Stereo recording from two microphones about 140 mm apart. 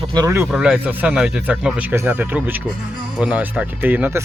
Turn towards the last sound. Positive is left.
turn(degrees=-15)  # may be behind; listen again after turning